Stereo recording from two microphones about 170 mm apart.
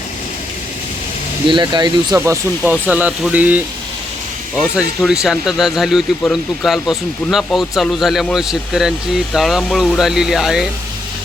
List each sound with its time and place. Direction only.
1.5 s speech: 30° right (ahead or behind)
2.1 s speech: 15° right (ahead or behind)
4.8 s speech: 5° right (ahead or behind)